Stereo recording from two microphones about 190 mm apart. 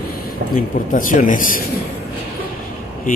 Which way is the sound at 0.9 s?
45° left (ahead or behind).